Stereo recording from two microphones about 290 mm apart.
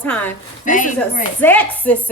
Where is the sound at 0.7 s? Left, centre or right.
Left.